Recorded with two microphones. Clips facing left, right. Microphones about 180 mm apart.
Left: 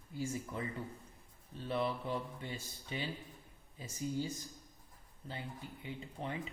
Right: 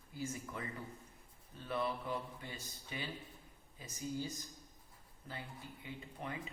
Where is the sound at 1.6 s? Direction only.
25° left (ahead or behind).